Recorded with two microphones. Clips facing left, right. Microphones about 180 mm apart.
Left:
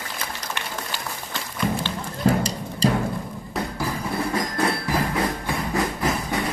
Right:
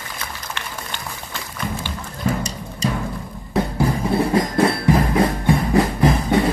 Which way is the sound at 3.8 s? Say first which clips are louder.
Right 8 dB; 30° right (ahead or behind).